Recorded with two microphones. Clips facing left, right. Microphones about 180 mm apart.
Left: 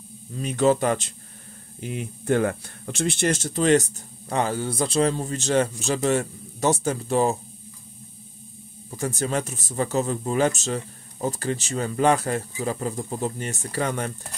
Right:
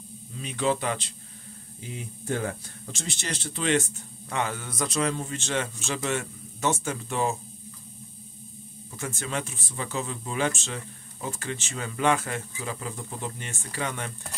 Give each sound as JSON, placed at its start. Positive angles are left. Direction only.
{"t": 0.4, "sound": "speech", "side_deg": 45}
{"t": 1.8, "sound": "speech", "side_deg": 65}
{"t": 8.9, "sound": "speech", "side_deg": 35}